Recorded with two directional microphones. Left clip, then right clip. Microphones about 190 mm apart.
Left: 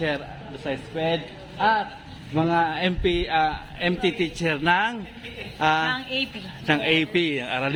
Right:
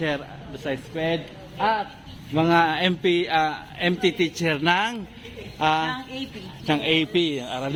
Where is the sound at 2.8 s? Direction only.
20° right (ahead or behind); by 7.7 s centre (ahead or behind).